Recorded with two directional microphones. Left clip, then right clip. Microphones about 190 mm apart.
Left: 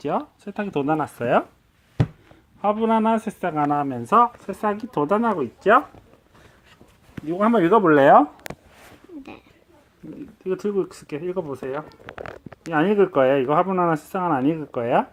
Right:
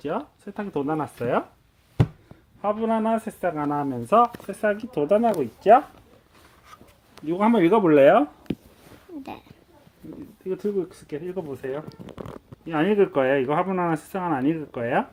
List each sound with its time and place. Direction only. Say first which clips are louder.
0.1 s a man's voice: left 4 dB; 25° left (ahead or behind)
2.6 s a man's voice: left 4 dB; 35° left (ahead or behind)
4.0 s speech: left 1 dB; 25° left (ahead or behind)
7.3 s speech: left 1 dB; centre (ahead or behind)
10.4 s speech: left 3 dB; 15° left (ahead or behind)
12.7 s speech: left 2 dB; 15° left (ahead or behind)